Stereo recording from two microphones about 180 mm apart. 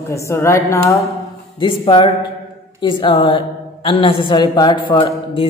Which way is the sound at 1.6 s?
30° left (ahead or behind).